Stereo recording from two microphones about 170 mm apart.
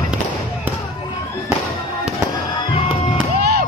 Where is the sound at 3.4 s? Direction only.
65° right (ahead or behind).